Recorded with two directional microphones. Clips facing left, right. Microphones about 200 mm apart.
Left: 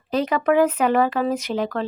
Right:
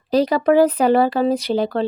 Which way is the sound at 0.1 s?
35° right (ahead or behind).